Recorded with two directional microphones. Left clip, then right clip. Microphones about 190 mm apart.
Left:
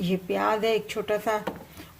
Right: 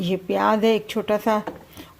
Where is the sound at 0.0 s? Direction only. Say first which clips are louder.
Right 5 dB; 35° right (ahead or behind).